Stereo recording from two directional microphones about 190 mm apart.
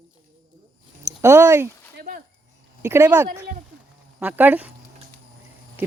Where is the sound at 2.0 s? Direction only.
50° right (ahead or behind).